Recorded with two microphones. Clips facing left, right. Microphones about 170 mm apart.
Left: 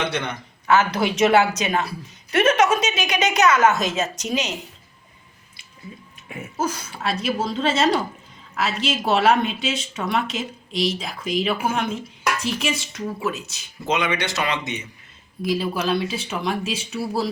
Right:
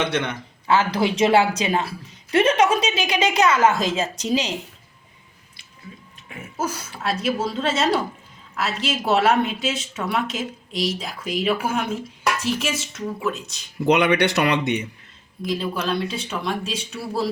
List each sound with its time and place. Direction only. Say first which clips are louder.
0.7 s a woman's voice: even; 30° right (ahead or behind)
6.6 s speech: left 1 dB; 5° right (ahead or behind)
13.8 s speech: right 6 dB; 65° right (ahead or behind)
15.4 s speech: left 2 dB; 5° left (ahead or behind)